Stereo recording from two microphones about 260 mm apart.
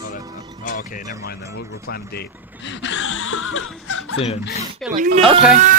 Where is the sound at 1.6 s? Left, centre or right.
Left.